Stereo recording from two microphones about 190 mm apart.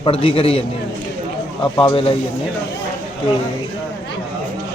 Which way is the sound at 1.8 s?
30° left (ahead or behind).